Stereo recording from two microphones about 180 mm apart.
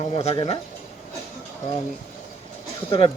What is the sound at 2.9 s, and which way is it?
Speech, 30° left (ahead or behind).